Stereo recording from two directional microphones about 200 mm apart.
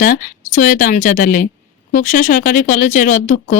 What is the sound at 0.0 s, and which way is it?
A woman's voice, 45° left (ahead or behind).